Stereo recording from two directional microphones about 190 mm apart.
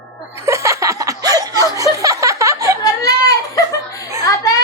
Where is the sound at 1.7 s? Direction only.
15° right (ahead or behind).